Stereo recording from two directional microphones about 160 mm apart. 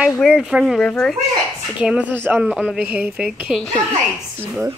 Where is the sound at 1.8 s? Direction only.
10° right (ahead or behind).